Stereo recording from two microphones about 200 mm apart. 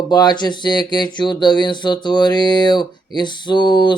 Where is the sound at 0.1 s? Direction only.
20° left (ahead or behind).